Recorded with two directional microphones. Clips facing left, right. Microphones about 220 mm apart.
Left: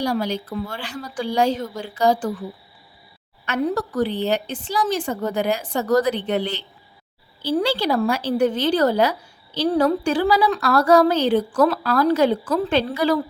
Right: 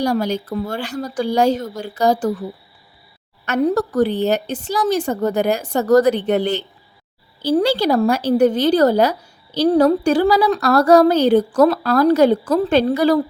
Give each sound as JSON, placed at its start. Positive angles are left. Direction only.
{"t": 0.0, "sound": "a woman's voice", "side_deg": -45}
{"t": 3.4, "sound": "a woman's voice", "side_deg": -45}